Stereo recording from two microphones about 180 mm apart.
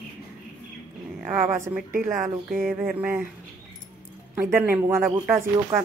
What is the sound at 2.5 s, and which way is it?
Speech, centre (ahead or behind).